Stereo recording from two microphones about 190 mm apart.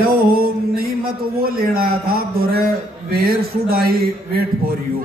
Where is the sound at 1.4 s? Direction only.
50° right (ahead or behind).